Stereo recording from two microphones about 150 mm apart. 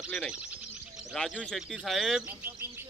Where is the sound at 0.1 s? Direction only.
5° left (ahead or behind).